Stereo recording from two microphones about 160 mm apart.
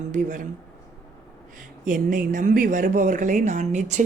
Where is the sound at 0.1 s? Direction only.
55° right (ahead or behind).